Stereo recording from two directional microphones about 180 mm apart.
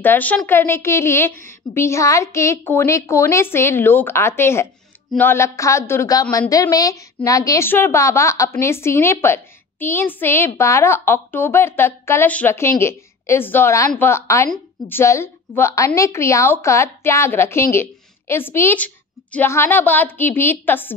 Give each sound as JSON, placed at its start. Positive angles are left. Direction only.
{"t": 0.0, "sound": "a woman's voice", "side_deg": 10}